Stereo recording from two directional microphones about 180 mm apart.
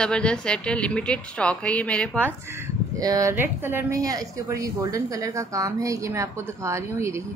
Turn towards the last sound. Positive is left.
turn(degrees=-15)  # may be behind; listen again after turning